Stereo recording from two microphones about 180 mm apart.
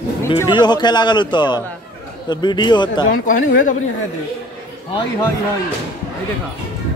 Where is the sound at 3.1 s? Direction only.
50° left (ahead or behind).